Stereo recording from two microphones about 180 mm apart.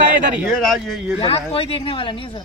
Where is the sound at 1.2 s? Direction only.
35° left (ahead or behind).